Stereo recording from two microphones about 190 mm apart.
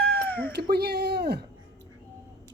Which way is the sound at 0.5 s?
60° right (ahead or behind).